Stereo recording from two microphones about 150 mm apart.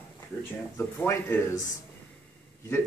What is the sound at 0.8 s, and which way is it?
Speech, 15° left (ahead or behind).